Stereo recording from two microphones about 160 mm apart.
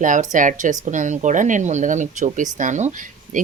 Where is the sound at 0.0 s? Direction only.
50° right (ahead or behind).